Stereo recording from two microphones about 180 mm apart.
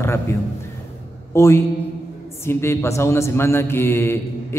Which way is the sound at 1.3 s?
15° left (ahead or behind).